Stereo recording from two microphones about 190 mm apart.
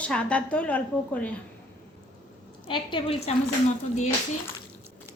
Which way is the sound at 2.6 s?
25° left (ahead or behind).